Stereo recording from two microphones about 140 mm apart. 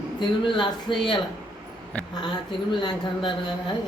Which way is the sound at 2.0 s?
10° left (ahead or behind).